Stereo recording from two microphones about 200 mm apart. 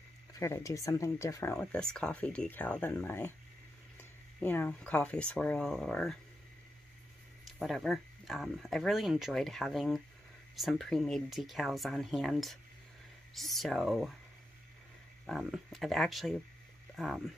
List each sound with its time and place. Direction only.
0.3 s speech: 15° left (ahead or behind)
1.6 s speech: 5° left (ahead or behind)
4.4 s speech: 10° left (ahead or behind)
7.4 s speech: centre (ahead or behind)
15.2 s speech: centre (ahead or behind)